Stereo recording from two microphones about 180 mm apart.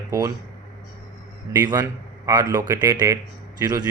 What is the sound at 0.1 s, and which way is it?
Speech, 20° right (ahead or behind).